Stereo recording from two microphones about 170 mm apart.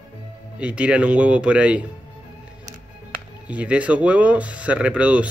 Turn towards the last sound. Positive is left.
turn(degrees=-10)  # may be behind; listen again after turning